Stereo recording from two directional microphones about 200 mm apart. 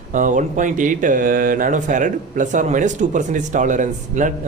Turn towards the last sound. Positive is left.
turn(degrees=-40)  # may be behind; listen again after turning